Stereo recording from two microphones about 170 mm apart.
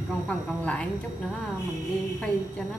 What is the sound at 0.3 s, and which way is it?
Speech, 5° left (ahead or behind).